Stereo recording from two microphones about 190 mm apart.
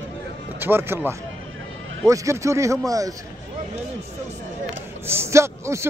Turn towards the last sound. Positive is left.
turn(degrees=-15)  # may be behind; listen again after turning